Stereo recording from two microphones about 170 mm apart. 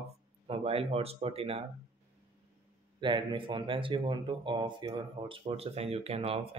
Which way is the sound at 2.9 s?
30° right (ahead or behind).